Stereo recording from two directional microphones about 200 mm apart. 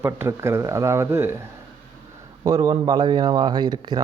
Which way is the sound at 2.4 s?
20° right (ahead or behind).